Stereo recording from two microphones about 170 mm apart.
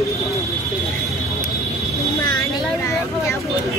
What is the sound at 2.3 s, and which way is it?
Vehicle, 20° left (ahead or behind).